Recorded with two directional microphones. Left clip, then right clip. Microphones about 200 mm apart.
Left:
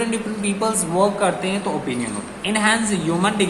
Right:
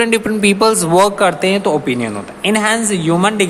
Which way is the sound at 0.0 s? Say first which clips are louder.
Right 11 dB; 45° right (ahead or behind).